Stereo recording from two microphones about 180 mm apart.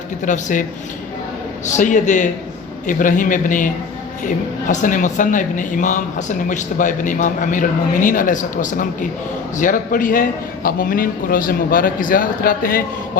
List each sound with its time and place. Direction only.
0.3 s speech: 45° left (ahead or behind)
1.6 s speech: 45° left (ahead or behind)
4.7 s speech: 45° left (ahead or behind)